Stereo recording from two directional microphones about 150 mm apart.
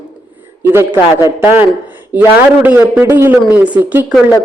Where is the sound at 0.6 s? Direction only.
15° right (ahead or behind).